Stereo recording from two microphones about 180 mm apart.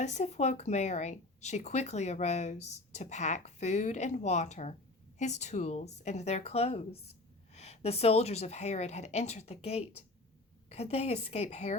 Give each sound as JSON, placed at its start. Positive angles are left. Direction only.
{"t": 0.0, "sound": "speech", "side_deg": 40}